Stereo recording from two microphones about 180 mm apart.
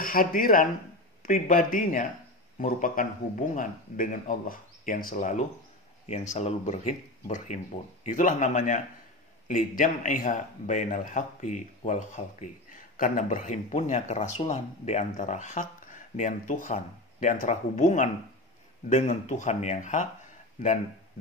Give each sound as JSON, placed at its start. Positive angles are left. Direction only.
{"t": 0.0, "sound": "a man's voice", "side_deg": 50}